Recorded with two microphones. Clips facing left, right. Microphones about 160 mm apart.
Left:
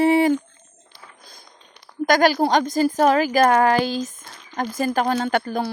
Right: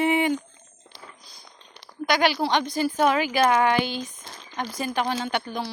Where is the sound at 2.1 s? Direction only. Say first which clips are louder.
Left 5 dB; 45° left (ahead or behind).